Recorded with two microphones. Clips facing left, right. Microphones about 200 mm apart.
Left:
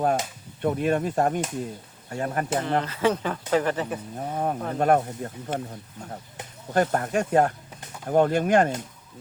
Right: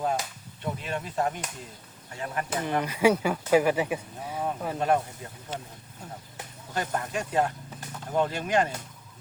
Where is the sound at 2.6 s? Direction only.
15° right (ahead or behind).